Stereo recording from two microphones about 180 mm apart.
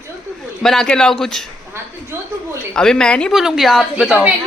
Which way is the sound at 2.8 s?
5° left (ahead or behind).